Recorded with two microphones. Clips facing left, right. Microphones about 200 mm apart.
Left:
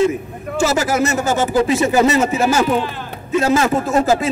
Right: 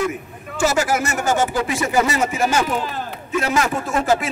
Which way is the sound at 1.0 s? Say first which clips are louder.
Left 3 dB; 20° left (ahead or behind).